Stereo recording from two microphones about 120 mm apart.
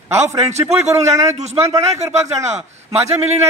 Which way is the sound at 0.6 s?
25° right (ahead or behind).